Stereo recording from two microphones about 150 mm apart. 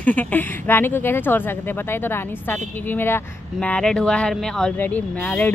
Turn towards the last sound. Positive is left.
turn(degrees=10)  # may be behind; listen again after turning